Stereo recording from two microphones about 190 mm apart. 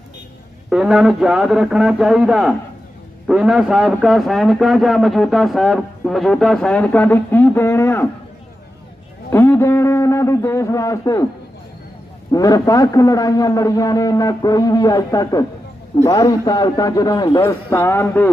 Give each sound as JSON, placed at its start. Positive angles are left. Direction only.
{"t": 0.7, "sound": "a man's voice", "side_deg": -5}
{"t": 9.3, "sound": "a man's voice", "side_deg": 15}
{"t": 12.3, "sound": "a man's voice", "side_deg": 20}